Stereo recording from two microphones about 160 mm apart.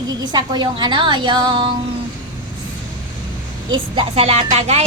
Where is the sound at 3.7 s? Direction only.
35° right (ahead or behind).